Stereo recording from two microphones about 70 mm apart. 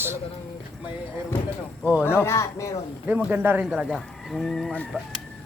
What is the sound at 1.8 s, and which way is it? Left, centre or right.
Speech, right.